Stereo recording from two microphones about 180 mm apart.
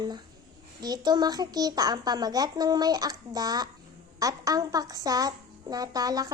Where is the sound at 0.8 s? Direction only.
25° right (ahead or behind).